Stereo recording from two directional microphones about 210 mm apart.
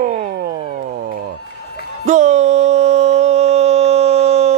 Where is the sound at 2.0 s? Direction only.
35° right (ahead or behind).